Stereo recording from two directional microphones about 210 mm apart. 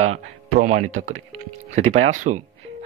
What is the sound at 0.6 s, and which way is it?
Speech, 35° right (ahead or behind).